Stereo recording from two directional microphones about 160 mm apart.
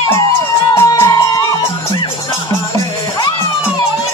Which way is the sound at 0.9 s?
20° left (ahead or behind).